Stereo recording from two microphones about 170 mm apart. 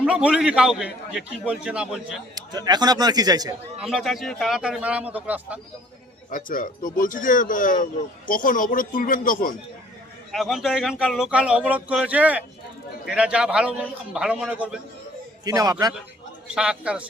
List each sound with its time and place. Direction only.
0.0 s a man's voice: 5° right (ahead or behind)
2.3 s a man's voice: 25° right (ahead or behind)
3.8 s a man's voice: centre (ahead or behind)
6.3 s speech: 55° left (ahead or behind)
10.3 s a man's voice: centre (ahead or behind)
15.4 s a man's voice: 20° right (ahead or behind)
16.5 s a man's voice: 5° right (ahead or behind)